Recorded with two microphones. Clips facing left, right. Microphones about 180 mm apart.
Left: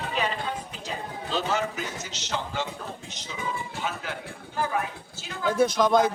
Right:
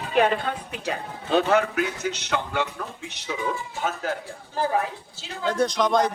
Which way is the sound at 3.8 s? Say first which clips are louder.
Right 5 dB; 45° right (ahead or behind).